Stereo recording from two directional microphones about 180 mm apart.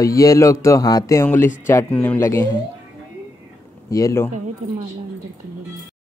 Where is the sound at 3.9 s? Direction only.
15° left (ahead or behind).